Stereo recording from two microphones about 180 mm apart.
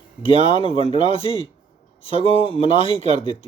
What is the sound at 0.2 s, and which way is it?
A man's voice, 30° left (ahead or behind).